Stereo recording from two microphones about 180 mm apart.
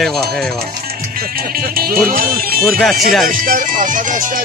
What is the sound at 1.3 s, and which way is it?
Speech, 55° right (ahead or behind).